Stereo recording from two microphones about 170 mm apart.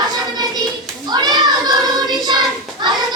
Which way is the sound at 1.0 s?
25° right (ahead or behind).